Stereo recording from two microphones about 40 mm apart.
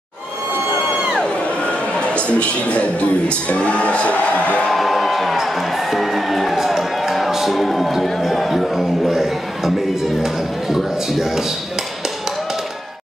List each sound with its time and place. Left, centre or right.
2.0 s speech: left
4.6 s music: centre
10.2 s speech: centre